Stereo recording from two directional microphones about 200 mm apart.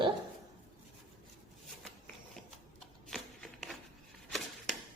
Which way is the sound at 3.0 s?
5° left (ahead or behind).